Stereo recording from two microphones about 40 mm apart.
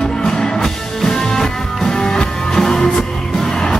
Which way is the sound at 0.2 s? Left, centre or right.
Centre.